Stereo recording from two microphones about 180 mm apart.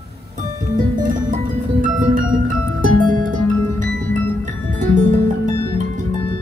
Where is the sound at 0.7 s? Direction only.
45° right (ahead or behind).